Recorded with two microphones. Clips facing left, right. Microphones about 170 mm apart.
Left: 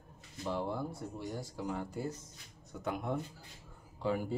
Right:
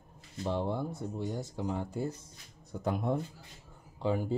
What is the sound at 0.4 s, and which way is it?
Speech, 25° right (ahead or behind).